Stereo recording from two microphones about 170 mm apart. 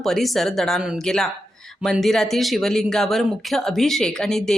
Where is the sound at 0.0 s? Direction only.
Centre (ahead or behind).